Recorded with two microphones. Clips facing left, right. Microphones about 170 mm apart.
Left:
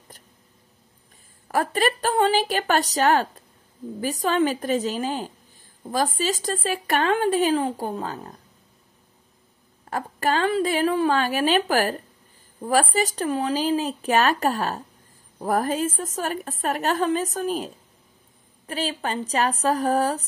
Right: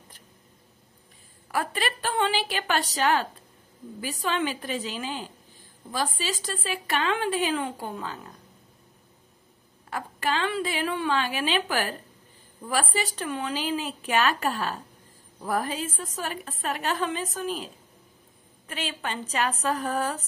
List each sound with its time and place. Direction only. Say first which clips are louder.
1.5 s a woman's voice: left 6 dB; 45° left (ahead or behind)
9.8 s a woman's voice: left 5 dB; 45° left (ahead or behind)
18.7 s speech: left 6 dB; 35° left (ahead or behind)